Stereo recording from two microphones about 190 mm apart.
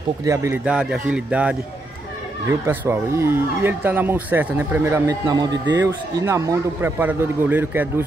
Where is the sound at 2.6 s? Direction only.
10° right (ahead or behind).